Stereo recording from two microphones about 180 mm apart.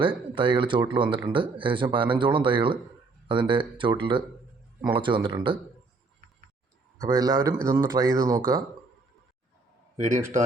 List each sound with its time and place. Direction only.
0.0 s speech: 30° right (ahead or behind)
7.0 s speech: 20° right (ahead or behind)
10.0 s a man's voice: 45° right (ahead or behind)